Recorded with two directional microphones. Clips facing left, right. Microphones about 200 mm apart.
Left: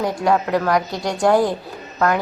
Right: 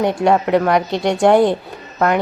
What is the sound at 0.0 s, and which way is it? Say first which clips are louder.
A woman's voice: right 4 dB; 25° right (ahead or behind).